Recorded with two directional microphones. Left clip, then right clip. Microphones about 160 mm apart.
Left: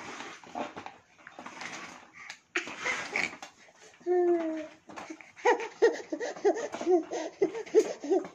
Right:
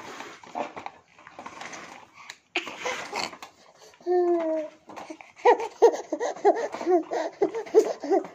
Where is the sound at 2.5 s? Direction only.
25° left (ahead or behind).